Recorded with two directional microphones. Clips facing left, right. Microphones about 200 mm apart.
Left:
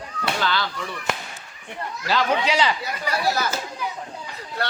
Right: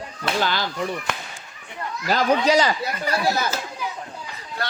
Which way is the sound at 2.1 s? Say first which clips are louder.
Right 4 dB; 40° right (ahead or behind).